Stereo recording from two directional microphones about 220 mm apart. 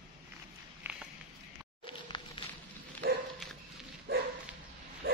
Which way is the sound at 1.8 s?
25° left (ahead or behind).